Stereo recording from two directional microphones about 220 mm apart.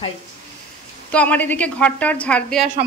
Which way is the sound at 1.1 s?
5° left (ahead or behind).